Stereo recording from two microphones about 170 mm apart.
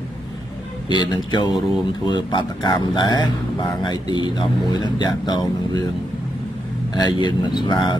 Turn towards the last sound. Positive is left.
turn(degrees=25)  # may be behind; listen again after turning